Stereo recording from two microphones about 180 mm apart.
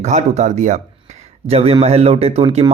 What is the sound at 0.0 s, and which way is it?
Speech, 40° right (ahead or behind).